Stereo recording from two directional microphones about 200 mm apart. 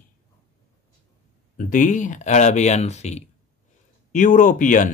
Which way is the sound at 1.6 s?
40° left (ahead or behind).